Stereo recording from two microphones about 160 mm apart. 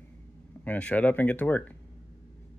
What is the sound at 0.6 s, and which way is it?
Speech, 10° left (ahead or behind).